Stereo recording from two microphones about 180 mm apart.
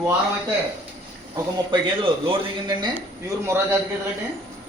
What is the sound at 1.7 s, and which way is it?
Speech, 25° right (ahead or behind).